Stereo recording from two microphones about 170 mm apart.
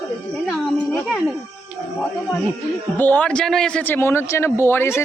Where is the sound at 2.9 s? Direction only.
10° left (ahead or behind).